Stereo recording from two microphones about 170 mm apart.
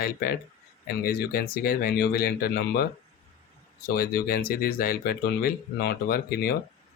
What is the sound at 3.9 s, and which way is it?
Speech, 60° left (ahead or behind).